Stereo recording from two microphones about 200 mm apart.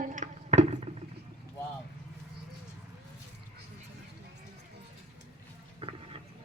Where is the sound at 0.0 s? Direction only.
40° right (ahead or behind).